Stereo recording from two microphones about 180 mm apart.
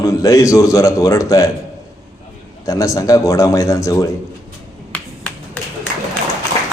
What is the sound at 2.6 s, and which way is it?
A man's voice, 15° left (ahead or behind).